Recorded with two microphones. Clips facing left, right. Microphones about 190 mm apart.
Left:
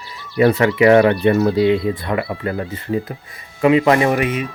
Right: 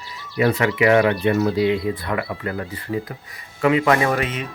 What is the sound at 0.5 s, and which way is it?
Speech, 30° left (ahead or behind).